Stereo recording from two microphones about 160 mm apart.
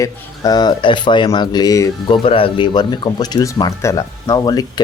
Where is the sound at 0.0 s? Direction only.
25° left (ahead or behind).